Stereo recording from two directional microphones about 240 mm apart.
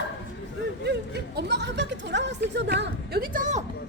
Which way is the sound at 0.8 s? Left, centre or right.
Right.